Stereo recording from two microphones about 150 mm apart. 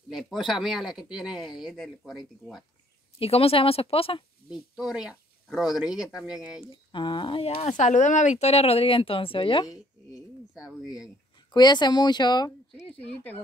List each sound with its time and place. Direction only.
0.1 s speech: centre (ahead or behind)
3.2 s speech: 40° left (ahead or behind)
4.5 s speech: 5° right (ahead or behind)
6.6 s speech: 35° left (ahead or behind)
11.5 s speech: 30° left (ahead or behind)